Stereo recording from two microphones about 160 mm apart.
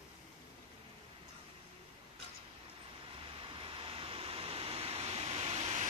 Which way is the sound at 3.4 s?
35° right (ahead or behind).